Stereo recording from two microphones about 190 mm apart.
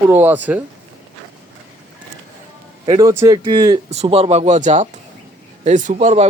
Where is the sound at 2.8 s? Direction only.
25° right (ahead or behind).